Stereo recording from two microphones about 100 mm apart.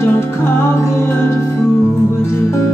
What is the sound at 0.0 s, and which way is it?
Music, 25° left (ahead or behind).